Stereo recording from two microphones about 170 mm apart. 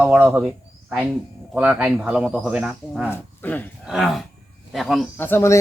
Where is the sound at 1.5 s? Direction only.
5° right (ahead or behind).